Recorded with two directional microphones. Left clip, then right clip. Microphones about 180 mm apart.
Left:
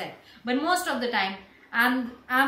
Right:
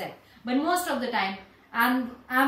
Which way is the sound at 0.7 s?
15° left (ahead or behind).